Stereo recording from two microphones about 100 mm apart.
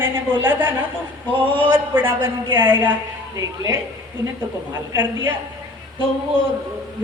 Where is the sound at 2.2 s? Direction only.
50° right (ahead or behind).